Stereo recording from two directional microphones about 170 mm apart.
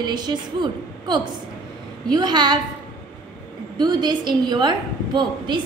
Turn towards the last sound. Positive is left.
turn(degrees=-25)  # may be behind; listen again after turning